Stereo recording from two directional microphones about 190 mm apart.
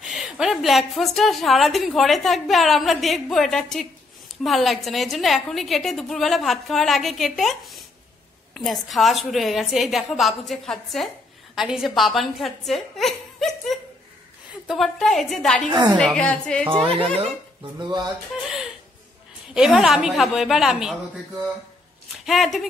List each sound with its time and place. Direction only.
0.0 s a woman's voice: centre (ahead or behind)
15.7 s speech: 25° right (ahead or behind)
16.0 s a woman's voice: 5° left (ahead or behind)
16.6 s speech: 30° right (ahead or behind)
19.5 s a woman's voice: centre (ahead or behind)
22.2 s speech: centre (ahead or behind)